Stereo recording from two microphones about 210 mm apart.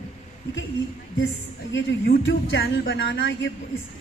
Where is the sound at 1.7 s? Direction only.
60° left (ahead or behind).